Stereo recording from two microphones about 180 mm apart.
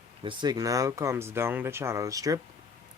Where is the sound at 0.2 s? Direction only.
25° right (ahead or behind).